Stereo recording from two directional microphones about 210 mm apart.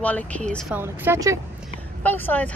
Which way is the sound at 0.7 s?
10° right (ahead or behind).